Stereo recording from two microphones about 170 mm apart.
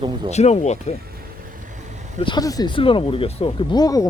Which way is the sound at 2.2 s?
25° left (ahead or behind).